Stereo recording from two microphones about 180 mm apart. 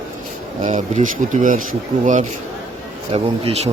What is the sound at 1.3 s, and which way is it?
Speech, 45° right (ahead or behind).